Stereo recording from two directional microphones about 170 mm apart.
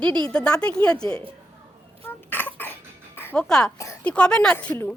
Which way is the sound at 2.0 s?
10° left (ahead or behind).